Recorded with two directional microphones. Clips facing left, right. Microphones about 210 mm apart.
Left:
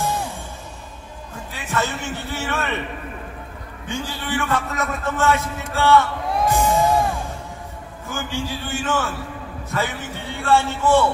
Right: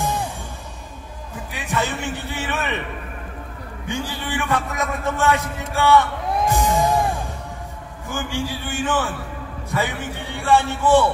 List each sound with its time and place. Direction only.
1.5 s a man's voice: 15° right (ahead or behind)
3.8 s a man's voice: 15° right (ahead or behind)
6.5 s music: 15° right (ahead or behind)
8.1 s a man's voice: 15° right (ahead or behind)